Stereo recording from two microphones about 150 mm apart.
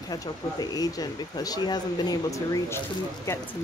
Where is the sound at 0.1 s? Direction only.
25° left (ahead or behind).